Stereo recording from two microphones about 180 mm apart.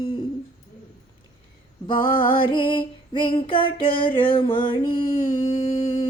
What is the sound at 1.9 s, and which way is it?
Music, 25° left (ahead or behind).